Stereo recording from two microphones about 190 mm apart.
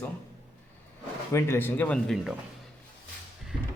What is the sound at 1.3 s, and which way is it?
A man's voice, 15° left (ahead or behind).